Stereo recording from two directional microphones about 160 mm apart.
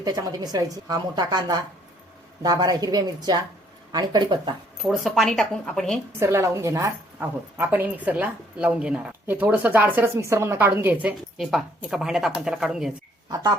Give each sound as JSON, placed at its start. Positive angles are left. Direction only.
{"t": 0.0, "sound": "a woman's voice", "side_deg": -25}
{"t": 4.8, "sound": "speech", "side_deg": 0}
{"t": 6.1, "sound": "a woman's voice", "side_deg": -20}